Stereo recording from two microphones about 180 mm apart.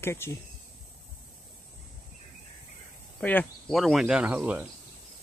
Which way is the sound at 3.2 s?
5° left (ahead or behind).